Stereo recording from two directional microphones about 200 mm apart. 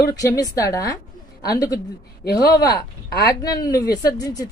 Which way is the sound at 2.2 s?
50° left (ahead or behind).